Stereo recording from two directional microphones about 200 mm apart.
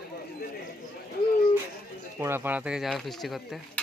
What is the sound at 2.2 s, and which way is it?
Speech, 10° right (ahead or behind).